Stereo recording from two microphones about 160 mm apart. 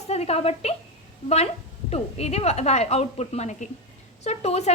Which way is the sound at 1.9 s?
40° left (ahead or behind).